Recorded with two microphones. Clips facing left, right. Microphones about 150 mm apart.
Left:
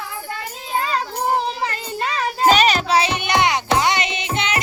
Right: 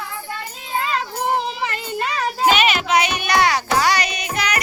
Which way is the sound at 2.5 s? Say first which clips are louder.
Left 2 dB; 35° left (ahead or behind).